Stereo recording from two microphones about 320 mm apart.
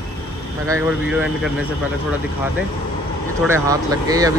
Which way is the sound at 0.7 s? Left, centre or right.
Centre.